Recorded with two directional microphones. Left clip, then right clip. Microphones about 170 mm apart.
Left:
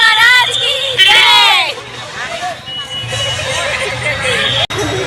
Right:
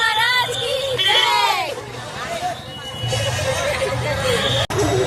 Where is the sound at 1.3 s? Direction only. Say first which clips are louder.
Left 9 dB; 10° left (ahead or behind).